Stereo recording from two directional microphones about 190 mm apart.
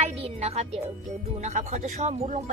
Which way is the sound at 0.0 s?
35° right (ahead or behind).